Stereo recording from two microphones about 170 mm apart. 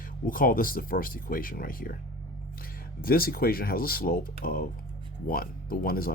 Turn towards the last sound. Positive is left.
turn(degrees=60)  # may be behind; listen again after turning